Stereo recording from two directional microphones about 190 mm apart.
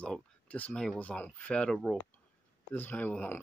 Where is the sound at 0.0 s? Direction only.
5° left (ahead or behind).